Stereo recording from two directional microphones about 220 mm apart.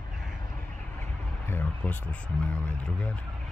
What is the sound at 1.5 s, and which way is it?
Speech, 10° left (ahead or behind).